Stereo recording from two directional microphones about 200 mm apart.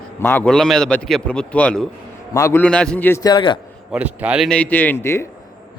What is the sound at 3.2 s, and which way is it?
Speech, 25° left (ahead or behind).